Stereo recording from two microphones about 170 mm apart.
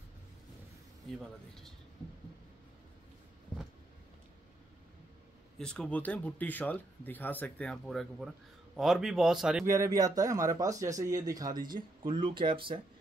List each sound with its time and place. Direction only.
5.6 s speech: 5° left (ahead or behind)
9.7 s speech: 20° right (ahead or behind)